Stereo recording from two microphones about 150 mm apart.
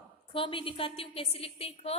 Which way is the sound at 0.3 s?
35° left (ahead or behind).